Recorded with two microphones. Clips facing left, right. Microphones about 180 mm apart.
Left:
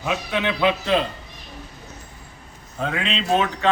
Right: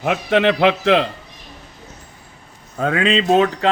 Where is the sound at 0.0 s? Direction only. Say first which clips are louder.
Right 8 dB; 75° right (ahead or behind).